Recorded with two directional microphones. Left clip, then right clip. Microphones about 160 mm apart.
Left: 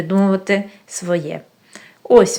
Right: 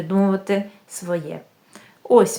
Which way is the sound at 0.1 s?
15° left (ahead or behind).